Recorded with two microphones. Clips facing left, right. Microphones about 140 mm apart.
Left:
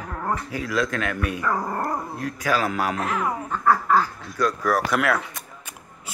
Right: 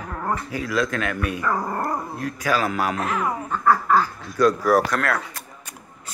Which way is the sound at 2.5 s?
30° right (ahead or behind).